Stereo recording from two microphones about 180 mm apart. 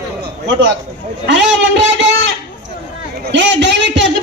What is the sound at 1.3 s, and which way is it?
A man's voice, 80° right.